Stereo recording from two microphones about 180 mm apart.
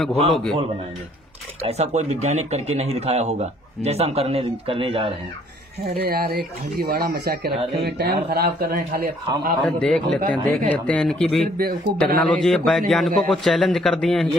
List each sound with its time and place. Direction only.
0.3 s a man's voice: 5° left (ahead or behind)
1.7 s speech: 35° right (ahead or behind)
5.9 s speech: 60° right (ahead or behind)
9.6 s a man's voice: 5° left (ahead or behind)